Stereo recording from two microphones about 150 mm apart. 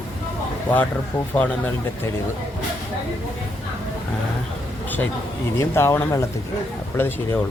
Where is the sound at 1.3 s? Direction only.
10° left (ahead or behind).